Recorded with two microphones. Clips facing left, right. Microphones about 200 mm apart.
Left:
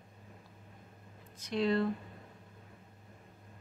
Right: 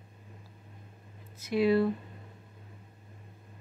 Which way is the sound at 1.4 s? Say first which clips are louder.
Right 5 dB; 5° right (ahead or behind).